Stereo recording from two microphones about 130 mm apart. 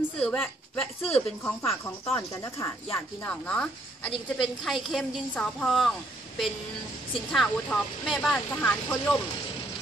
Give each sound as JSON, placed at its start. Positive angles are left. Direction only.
{"t": 0.2, "sound": "speech", "side_deg": 10}
{"t": 2.9, "sound": "a woman's voice", "side_deg": 10}
{"t": 8.5, "sound": "speech", "side_deg": 15}